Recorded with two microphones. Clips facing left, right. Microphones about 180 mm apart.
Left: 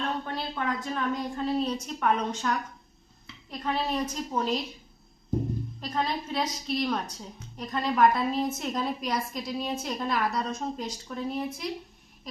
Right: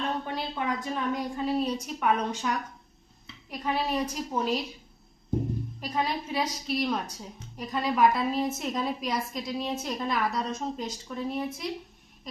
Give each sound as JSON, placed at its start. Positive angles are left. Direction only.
{"t": 0.3, "sound": "a woman's voice", "side_deg": -15}
{"t": 5.8, "sound": "a woman's voice", "side_deg": -10}